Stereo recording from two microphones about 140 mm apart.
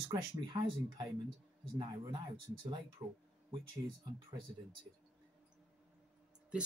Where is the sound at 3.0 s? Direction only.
25° right (ahead or behind).